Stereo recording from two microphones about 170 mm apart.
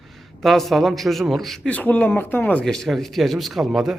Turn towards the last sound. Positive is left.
turn(degrees=0)  # may be behind; listen again after turning